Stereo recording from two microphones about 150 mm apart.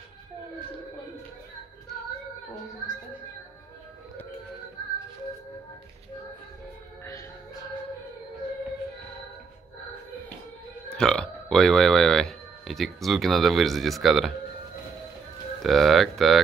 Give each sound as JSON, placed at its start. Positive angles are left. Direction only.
{"t": 10.9, "sound": "burping", "side_deg": 5}
{"t": 15.6, "sound": "speech", "side_deg": 0}